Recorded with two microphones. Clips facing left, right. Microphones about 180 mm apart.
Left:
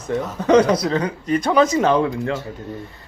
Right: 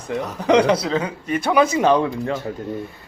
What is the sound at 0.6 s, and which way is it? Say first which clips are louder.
Speech: left 2 dB; 30° right (ahead or behind).